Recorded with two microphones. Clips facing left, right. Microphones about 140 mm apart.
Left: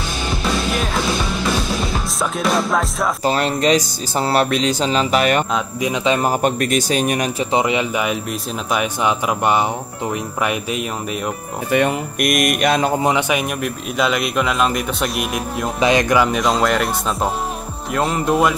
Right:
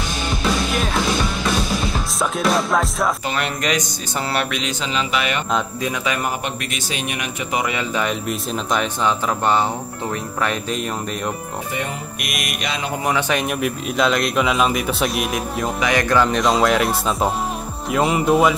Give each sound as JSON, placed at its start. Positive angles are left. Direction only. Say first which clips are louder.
{"t": 2.1, "sound": "speech", "louder": "even", "side_deg": 0}
{"t": 3.3, "sound": "music", "louder": "left 6 dB", "side_deg": 35}
{"t": 5.8, "sound": "speech", "louder": "left 5 dB", "side_deg": 25}
{"t": 6.4, "sound": "a man's voice", "louder": "left 10 dB", "side_deg": 45}
{"t": 7.5, "sound": "speech", "louder": "left 3 dB", "side_deg": 20}
{"t": 12.2, "sound": "a man's voice", "louder": "left 14 dB", "side_deg": 50}
{"t": 13.3, "sound": "speech", "louder": "even", "side_deg": 5}
{"t": 15.8, "sound": "speech", "louder": "left 3 dB", "side_deg": 20}